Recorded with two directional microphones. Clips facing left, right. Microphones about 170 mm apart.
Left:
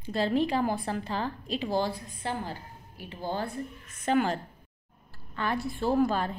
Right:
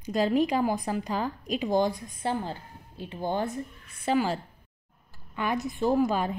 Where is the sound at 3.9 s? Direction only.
10° right (ahead or behind).